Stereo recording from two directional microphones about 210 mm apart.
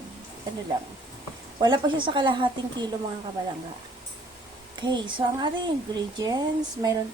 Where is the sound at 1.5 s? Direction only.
20° right (ahead or behind).